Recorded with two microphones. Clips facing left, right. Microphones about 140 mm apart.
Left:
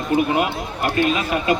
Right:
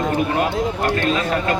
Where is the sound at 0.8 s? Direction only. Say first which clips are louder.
Left 4 dB; 10° left (ahead or behind).